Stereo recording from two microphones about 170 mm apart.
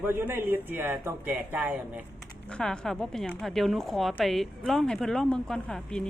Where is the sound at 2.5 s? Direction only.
5° left (ahead or behind).